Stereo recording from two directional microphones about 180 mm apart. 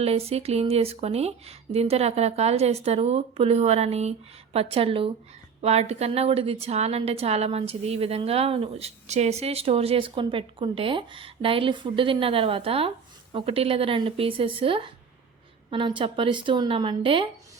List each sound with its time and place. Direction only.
0.0 s a woman's voice: 35° right (ahead or behind)